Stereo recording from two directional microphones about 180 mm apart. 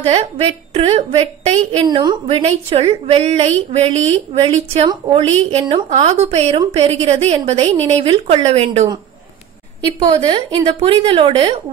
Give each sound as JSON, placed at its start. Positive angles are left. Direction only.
{"t": 0.0, "sound": "a woman's voice", "side_deg": -35}
{"t": 1.9, "sound": "a woman's voice", "side_deg": -25}
{"t": 9.9, "sound": "a woman's voice", "side_deg": -25}